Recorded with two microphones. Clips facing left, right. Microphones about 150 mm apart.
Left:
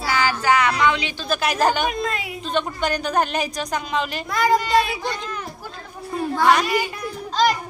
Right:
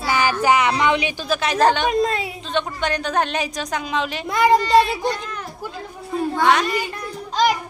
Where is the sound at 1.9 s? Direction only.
30° right (ahead or behind).